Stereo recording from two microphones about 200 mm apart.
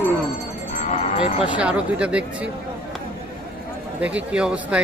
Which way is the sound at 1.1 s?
30° left (ahead or behind).